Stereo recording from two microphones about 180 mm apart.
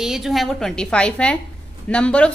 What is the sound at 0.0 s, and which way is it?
A woman's voice, centre (ahead or behind).